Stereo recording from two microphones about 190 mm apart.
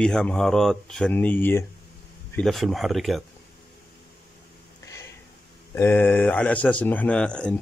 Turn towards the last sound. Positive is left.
turn(degrees=5)  # may be behind; listen again after turning